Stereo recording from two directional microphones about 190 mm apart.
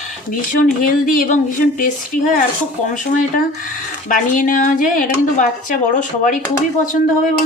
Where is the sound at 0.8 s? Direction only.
45° left (ahead or behind).